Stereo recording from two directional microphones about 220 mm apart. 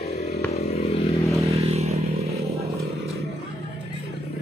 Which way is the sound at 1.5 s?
30° right (ahead or behind).